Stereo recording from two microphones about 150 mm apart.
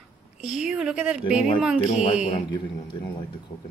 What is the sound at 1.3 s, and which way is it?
Speech, 40° left (ahead or behind).